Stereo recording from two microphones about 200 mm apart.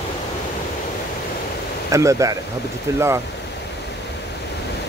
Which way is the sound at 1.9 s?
15° right (ahead or behind).